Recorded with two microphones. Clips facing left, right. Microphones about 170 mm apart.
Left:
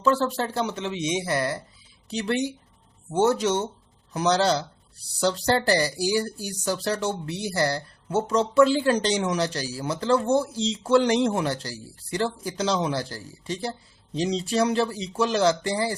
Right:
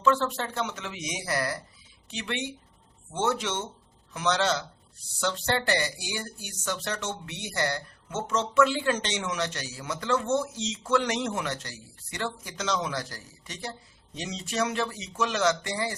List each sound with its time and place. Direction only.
0.0 s speech: 35° left (ahead or behind)
2.0 s speech: 35° left (ahead or behind)